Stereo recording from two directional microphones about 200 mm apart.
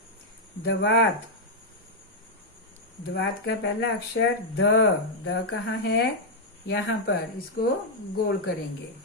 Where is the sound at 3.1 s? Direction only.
50° left (ahead or behind).